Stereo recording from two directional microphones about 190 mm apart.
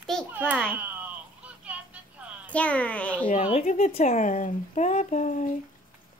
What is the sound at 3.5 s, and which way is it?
Speech, 40° left (ahead or behind).